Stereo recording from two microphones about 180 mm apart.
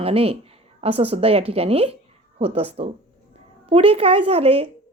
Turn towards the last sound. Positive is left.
turn(degrees=-35)  # may be behind; listen again after turning